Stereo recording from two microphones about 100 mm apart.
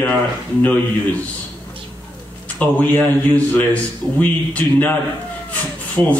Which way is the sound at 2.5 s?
15° left (ahead or behind).